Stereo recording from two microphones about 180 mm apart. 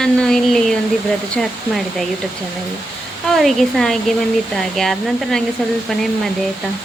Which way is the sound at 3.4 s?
Centre (ahead or behind).